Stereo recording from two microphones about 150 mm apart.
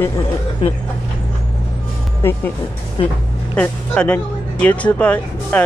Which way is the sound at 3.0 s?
35° left (ahead or behind).